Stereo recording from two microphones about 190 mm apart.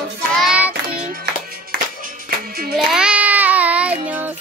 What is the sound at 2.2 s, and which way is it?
Music, 50° right (ahead or behind).